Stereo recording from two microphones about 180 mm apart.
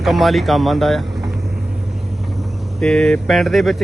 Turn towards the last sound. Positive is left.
turn(degrees=0)  # may be behind; listen again after turning